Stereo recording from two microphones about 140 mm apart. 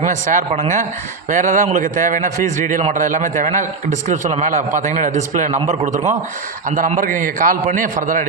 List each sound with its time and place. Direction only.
0.0 s a man's voice: 60° right (ahead or behind)
6.7 s a man's voice: 65° right (ahead or behind)